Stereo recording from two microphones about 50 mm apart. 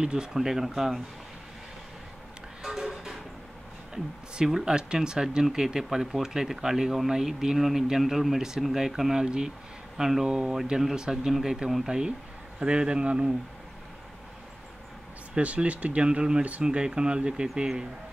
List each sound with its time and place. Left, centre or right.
0.0 s speech: centre
2.6 s train: centre
4.5 s speech: centre
12.5 s speech: centre
15.3 s speech: right